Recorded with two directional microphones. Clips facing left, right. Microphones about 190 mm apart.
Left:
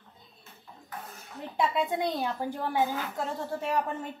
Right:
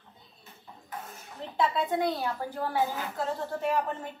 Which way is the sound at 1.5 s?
15° left (ahead or behind).